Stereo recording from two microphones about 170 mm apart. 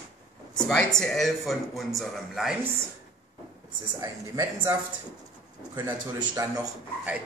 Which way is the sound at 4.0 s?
20° right (ahead or behind).